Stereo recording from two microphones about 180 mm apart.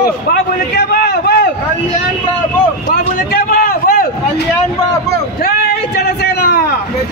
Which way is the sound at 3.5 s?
50° left (ahead or behind).